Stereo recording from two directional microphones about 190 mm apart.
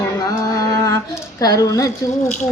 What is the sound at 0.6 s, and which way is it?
Speech, 15° left (ahead or behind).